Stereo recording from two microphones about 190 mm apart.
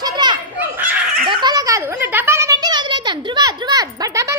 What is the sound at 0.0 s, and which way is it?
Children playing, 25° right (ahead or behind).